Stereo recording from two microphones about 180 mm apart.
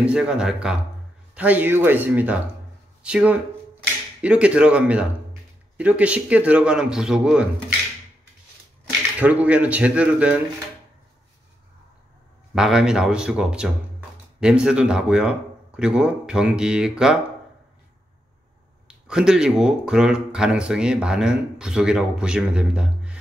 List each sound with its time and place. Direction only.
0.0 s speech: 5° right (ahead or behind)
9.2 s speech: 10° right (ahead or behind)
12.5 s speech: 5° right (ahead or behind)
18.9 s speech: 5° right (ahead or behind)